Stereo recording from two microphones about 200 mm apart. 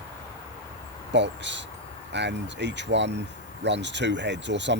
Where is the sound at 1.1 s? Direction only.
60° right (ahead or behind).